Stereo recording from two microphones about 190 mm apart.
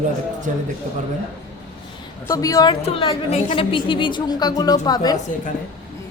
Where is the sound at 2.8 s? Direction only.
30° left (ahead or behind).